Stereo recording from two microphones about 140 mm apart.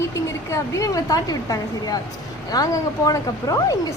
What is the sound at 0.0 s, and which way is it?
A woman's voice, 20° left (ahead or behind).